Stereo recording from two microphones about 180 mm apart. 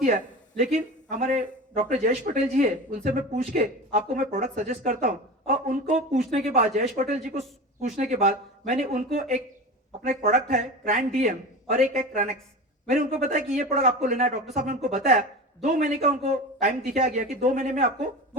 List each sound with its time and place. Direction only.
0.6 s a man's voice: 40° right (ahead or behind)